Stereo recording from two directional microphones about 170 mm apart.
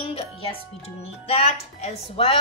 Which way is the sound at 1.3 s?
35° left (ahead or behind).